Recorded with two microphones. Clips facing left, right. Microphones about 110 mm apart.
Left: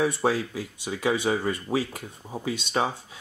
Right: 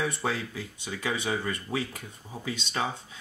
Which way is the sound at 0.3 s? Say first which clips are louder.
Left 5 dB; 15° left (ahead or behind).